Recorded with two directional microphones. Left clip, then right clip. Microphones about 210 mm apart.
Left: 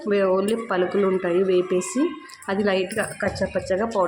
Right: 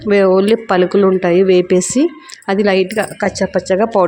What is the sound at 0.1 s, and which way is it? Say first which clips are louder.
A woman's voice: right 10 dB; 35° right (ahead or behind).